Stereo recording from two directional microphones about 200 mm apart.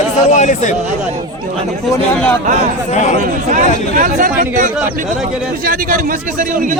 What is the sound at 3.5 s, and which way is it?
A man's voice, 40° right (ahead or behind).